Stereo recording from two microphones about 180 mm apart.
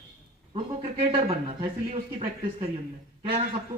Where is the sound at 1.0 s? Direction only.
30° right (ahead or behind).